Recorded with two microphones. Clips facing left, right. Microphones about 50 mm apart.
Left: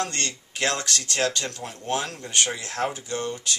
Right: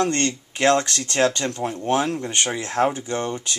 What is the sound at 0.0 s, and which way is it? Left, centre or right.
Speech, right.